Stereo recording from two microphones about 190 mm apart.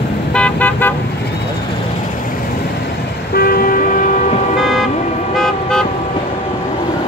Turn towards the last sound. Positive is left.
turn(degrees=5)  # may be behind; listen again after turning